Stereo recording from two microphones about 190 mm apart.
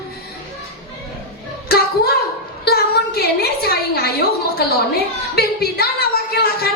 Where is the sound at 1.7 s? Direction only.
55° left (ahead or behind).